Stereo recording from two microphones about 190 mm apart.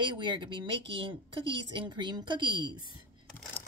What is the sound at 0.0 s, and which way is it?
Speech, 25° right (ahead or behind).